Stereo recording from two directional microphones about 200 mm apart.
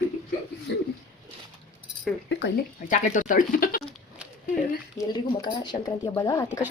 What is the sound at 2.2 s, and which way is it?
Speech, 60° left (ahead or behind).